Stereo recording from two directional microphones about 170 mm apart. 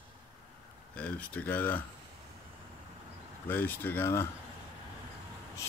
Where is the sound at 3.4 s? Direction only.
10° left (ahead or behind).